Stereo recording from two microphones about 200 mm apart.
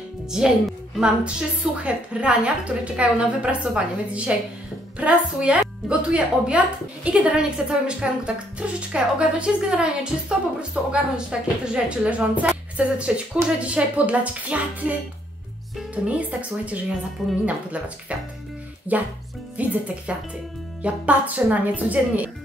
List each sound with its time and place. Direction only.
0.3 s a woman's voice: 5° right (ahead or behind)